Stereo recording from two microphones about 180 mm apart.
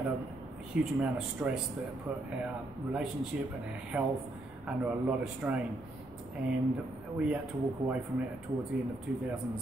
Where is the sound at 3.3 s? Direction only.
5° right (ahead or behind).